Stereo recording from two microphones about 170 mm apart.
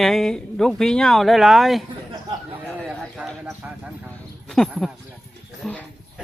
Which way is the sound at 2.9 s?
Centre (ahead or behind).